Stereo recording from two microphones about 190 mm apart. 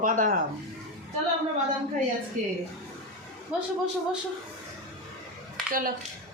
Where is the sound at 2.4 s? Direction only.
40° right (ahead or behind).